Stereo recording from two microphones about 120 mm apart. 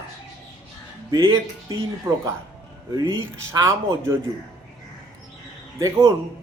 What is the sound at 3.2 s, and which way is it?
Speech, 25° right (ahead or behind).